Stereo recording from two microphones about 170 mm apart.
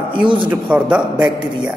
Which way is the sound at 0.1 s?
30° right (ahead or behind).